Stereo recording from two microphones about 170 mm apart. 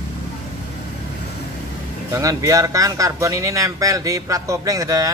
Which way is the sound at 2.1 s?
20° right (ahead or behind).